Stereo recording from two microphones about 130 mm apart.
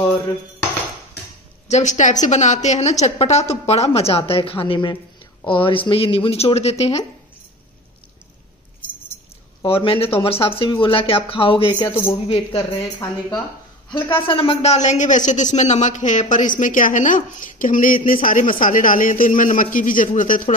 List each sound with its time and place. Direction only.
1.7 s a woman's voice: 65° left (ahead or behind)
9.7 s speech: 45° left (ahead or behind)
12.5 s speech: 25° left (ahead or behind)
14.2 s speech: 45° left (ahead or behind); by 20.4 s 90° left